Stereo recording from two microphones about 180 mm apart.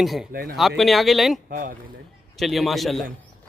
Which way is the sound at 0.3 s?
55° right (ahead or behind).